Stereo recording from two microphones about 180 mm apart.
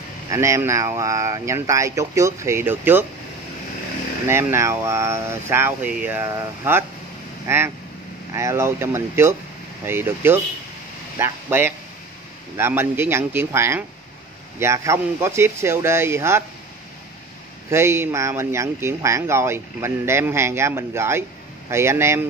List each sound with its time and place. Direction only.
0.3 s speech: 15° right (ahead or behind)
4.3 s speech: 15° right (ahead or behind)
17.6 s speech: 15° right (ahead or behind)